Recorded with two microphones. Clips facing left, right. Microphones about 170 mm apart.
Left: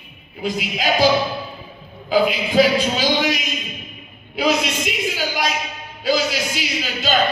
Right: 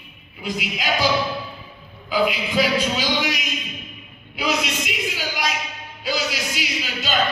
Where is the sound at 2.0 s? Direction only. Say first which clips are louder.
Left 4 dB; 30° left (ahead or behind).